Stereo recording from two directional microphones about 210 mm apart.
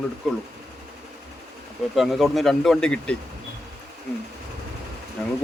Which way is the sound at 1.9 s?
Centre (ahead or behind).